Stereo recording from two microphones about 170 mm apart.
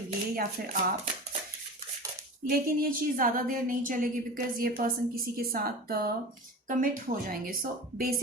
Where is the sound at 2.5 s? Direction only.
55° right (ahead or behind).